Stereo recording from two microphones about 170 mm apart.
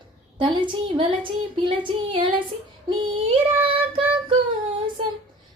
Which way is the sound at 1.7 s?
30° right (ahead or behind).